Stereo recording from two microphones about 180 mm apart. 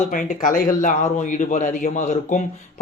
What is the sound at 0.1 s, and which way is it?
Speech, 50° left (ahead or behind).